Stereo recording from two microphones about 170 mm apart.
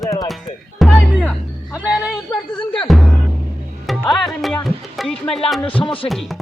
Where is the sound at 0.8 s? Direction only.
Centre (ahead or behind).